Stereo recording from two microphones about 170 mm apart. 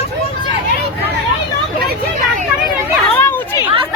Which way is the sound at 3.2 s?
15° left (ahead or behind).